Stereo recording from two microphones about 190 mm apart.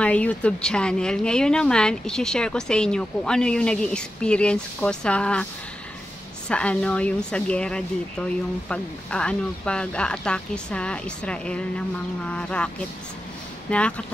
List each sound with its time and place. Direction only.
0.0 s speech: 5° left (ahead or behind)
6.5 s speech: 5° left (ahead or behind)